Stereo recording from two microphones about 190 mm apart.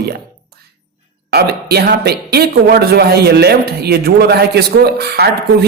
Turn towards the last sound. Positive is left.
turn(degrees=-55)  # may be behind; listen again after turning